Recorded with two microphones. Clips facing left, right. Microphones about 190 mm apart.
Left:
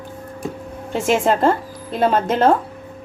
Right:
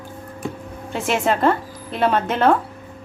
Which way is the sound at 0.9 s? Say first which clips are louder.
Left 3 dB; 45° left (ahead or behind).